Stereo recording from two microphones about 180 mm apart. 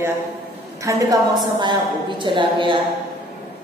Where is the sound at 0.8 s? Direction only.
20° right (ahead or behind).